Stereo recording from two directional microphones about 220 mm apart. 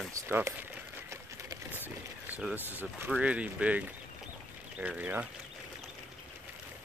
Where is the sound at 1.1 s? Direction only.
15° right (ahead or behind).